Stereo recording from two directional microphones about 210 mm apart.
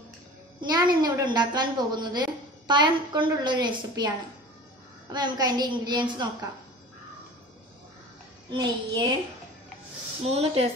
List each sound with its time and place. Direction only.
0.6 s a woman's voice: 20° right (ahead or behind)
5.1 s a woman's voice: 20° right (ahead or behind)
8.5 s a woman's voice: 20° right (ahead or behind)
10.3 s a woman's voice: 30° right (ahead or behind)